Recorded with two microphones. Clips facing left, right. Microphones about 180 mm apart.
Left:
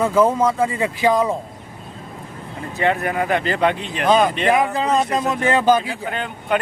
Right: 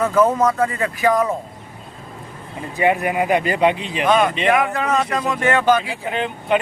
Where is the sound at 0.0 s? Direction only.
10° left (ahead or behind).